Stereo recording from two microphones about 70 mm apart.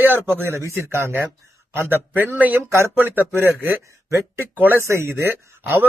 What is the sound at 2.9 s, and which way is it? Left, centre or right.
Speech, right.